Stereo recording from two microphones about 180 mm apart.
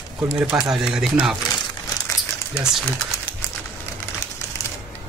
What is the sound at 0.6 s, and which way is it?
Speech, 5° right (ahead or behind).